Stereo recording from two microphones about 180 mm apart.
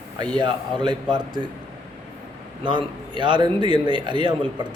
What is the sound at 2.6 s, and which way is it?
A man's voice, 25° right (ahead or behind).